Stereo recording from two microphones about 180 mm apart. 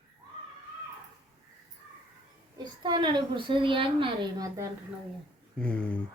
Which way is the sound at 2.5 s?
25° right (ahead or behind).